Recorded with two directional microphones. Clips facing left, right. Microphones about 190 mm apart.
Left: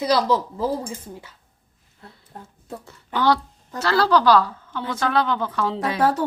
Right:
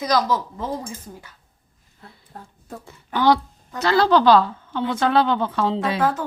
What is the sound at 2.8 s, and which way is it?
A woman's voice, 15° right (ahead or behind).